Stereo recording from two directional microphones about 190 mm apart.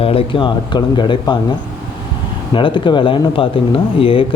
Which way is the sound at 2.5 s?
25° left (ahead or behind).